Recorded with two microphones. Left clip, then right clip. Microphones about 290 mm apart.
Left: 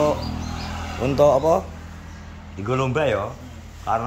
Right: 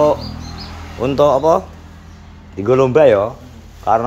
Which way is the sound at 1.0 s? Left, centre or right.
Centre.